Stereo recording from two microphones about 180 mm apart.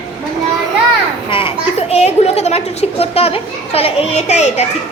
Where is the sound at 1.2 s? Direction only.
30° left (ahead or behind).